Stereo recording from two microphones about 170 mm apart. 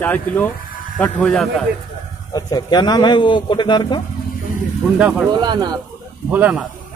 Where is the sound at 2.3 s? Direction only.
20° left (ahead or behind).